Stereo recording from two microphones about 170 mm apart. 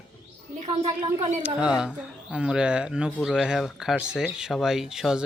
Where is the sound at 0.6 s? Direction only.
40° right (ahead or behind).